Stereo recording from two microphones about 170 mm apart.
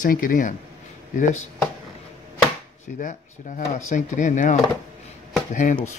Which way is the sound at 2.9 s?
55° left (ahead or behind).